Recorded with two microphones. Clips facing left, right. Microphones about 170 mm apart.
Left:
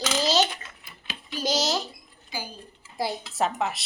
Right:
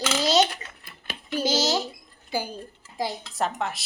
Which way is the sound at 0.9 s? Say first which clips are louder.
Right 7 dB; 55° right (ahead or behind).